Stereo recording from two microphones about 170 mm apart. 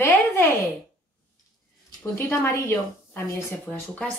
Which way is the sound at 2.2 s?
15° left (ahead or behind).